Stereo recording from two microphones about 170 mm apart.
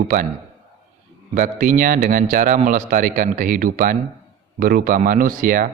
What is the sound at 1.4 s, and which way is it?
A man's voice, 50° right (ahead or behind).